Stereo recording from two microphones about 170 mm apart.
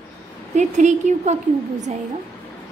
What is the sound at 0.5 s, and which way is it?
Speech, 45° right (ahead or behind).